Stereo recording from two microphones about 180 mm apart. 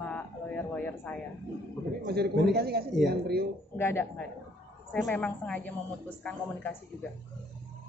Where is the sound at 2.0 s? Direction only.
60° right (ahead or behind).